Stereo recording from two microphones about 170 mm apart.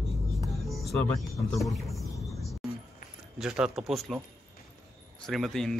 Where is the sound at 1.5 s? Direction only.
Centre (ahead or behind).